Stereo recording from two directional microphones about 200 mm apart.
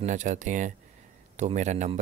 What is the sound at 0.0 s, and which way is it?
Speech, 40° right (ahead or behind).